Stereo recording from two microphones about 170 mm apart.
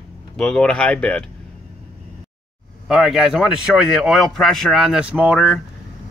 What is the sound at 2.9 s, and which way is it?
A man's voice, centre (ahead or behind).